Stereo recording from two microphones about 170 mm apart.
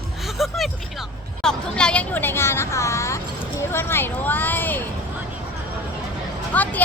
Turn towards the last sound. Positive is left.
turn(degrees=10)  # may be behind; listen again after turning